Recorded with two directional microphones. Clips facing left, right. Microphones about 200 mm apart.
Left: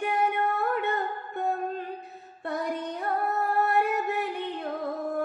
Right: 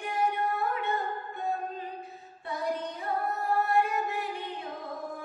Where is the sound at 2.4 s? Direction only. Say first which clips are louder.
Left 2 dB; 60° left (ahead or behind).